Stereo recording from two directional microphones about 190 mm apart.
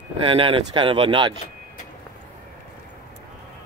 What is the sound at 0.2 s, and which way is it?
Speech, 25° right (ahead or behind).